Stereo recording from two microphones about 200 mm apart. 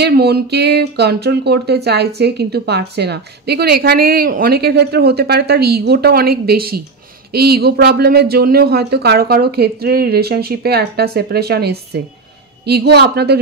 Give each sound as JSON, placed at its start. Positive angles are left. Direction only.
{"t": 0.0, "sound": "a woman's voice", "side_deg": -55}